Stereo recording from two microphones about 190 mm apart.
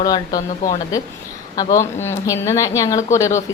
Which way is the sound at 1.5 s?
15° left (ahead or behind).